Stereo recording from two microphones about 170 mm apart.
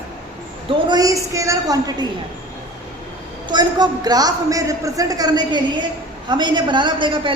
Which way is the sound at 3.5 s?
25° right (ahead or behind).